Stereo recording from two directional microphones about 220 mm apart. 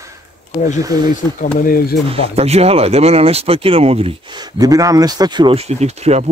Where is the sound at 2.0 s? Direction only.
25° right (ahead or behind).